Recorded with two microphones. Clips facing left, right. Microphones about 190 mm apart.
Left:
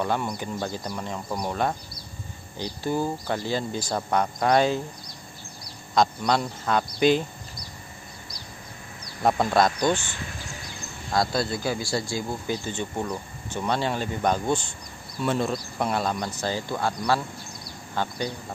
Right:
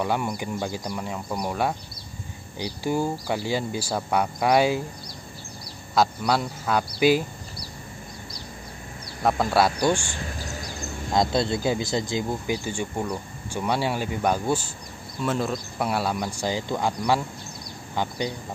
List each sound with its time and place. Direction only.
0.0 s speech: 10° right (ahead or behind)
5.9 s speech: 5° right (ahead or behind)
9.2 s speech: centre (ahead or behind)
11.1 s speech: 20° right (ahead or behind)